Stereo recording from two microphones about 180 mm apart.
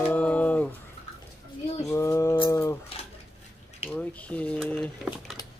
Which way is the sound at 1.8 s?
15° left (ahead or behind).